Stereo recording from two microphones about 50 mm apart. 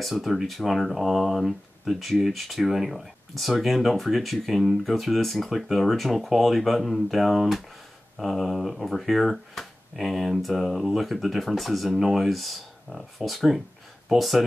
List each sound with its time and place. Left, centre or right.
0.0 s speech: centre